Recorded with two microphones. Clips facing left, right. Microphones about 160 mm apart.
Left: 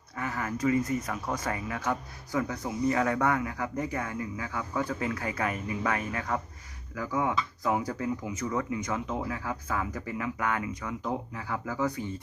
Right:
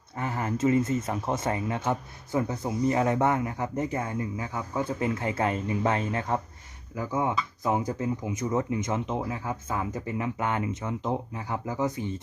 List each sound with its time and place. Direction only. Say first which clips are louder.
0.2 s speech: right 3 dB; 25° right (ahead or behind)